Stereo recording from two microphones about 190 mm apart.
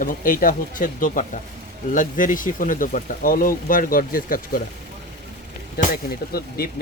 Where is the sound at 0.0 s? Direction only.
45° left (ahead or behind).